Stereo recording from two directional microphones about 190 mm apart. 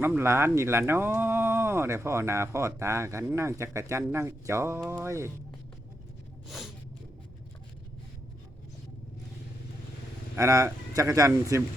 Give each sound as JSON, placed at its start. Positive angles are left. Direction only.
{"t": 0.0, "sound": "speech", "side_deg": -10}
{"t": 10.3, "sound": "speech", "side_deg": -15}